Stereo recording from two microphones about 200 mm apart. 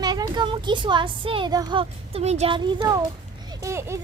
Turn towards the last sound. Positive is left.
turn(degrees=-15)  # may be behind; listen again after turning